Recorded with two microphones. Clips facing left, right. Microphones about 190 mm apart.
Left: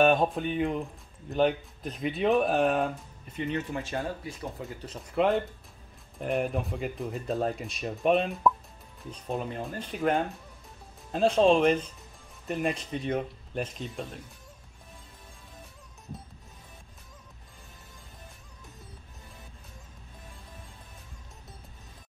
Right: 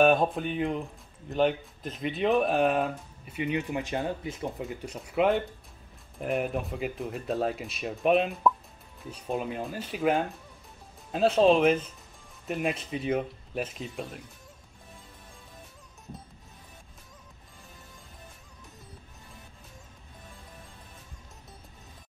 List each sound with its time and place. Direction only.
0.0 s speech: centre (ahead or behind)
3.3 s speech: 10° right (ahead or behind)